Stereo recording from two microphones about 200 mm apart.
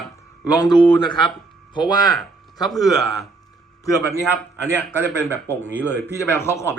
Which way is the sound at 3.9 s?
15° left (ahead or behind).